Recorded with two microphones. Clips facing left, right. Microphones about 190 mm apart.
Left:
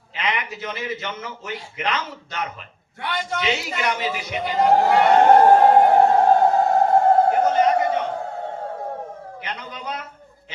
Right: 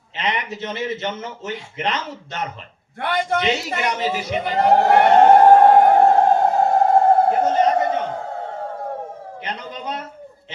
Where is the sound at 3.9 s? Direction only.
30° right (ahead or behind).